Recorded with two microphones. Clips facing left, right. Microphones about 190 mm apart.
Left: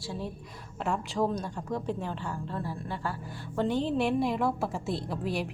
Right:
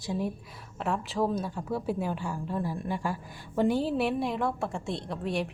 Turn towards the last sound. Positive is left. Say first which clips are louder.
# right 1 dB
turn(degrees=0)  # may be behind; listen again after turning